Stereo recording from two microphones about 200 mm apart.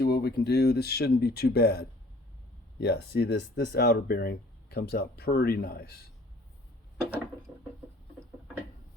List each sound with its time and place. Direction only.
0.0 s speech: 55° left (ahead or behind)